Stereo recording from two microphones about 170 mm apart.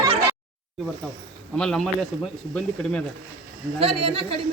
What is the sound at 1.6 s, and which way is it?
Speech, 5° left (ahead or behind).